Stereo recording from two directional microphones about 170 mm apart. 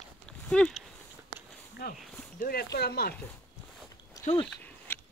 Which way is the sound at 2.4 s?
65° left (ahead or behind).